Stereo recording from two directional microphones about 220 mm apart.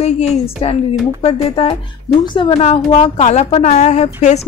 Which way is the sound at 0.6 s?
25° left (ahead or behind).